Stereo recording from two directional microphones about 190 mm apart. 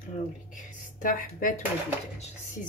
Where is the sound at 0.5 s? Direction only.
45° left (ahead or behind).